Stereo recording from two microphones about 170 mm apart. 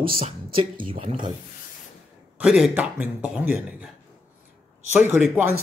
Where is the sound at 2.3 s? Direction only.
5° right (ahead or behind).